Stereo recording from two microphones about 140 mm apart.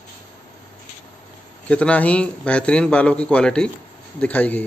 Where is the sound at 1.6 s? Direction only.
10° left (ahead or behind).